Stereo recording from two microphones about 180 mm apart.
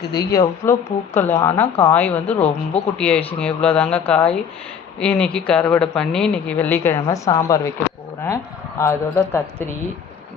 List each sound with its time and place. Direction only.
0.1 s speech: 20° left (ahead or behind)
8.8 s speech: 15° left (ahead or behind)